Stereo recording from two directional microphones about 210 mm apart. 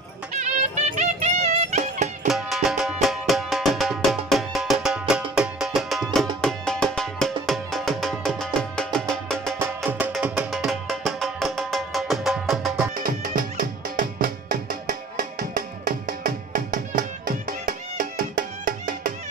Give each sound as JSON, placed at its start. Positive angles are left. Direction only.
{"t": 0.3, "sound": "music", "side_deg": -35}
{"t": 2.2, "sound": "music", "side_deg": 0}
{"t": 9.8, "sound": "music", "side_deg": -10}
{"t": 12.9, "sound": "music", "side_deg": -40}